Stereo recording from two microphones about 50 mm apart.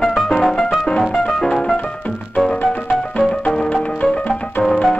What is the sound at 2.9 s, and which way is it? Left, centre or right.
Music, centre.